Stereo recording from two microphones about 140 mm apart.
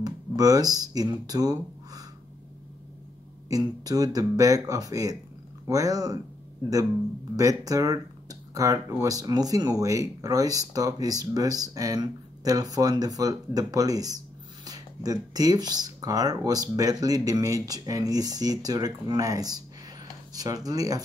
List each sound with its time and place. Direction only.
0.0 s speech: 25° right (ahead or behind)
3.4 s speech: 25° right (ahead or behind)
7.3 s speech: 25° right (ahead or behind)
14.6 s a sound: 25° right (ahead or behind)
15.3 s speech: 25° right (ahead or behind)